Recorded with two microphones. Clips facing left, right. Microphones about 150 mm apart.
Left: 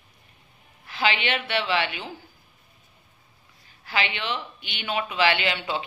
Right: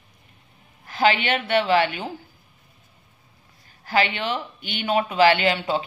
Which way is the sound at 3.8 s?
45° right (ahead or behind).